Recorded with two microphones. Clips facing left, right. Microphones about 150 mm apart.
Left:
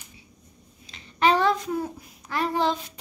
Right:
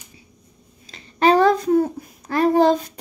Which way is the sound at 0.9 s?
40° right (ahead or behind).